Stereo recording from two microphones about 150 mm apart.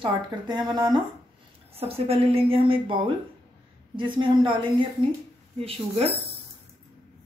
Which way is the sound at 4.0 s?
30° right (ahead or behind).